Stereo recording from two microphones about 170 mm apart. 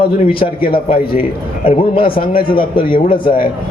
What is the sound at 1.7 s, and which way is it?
A man's voice, 30° left (ahead or behind).